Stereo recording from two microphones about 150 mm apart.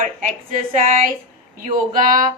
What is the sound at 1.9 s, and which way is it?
Speech, 65° right (ahead or behind).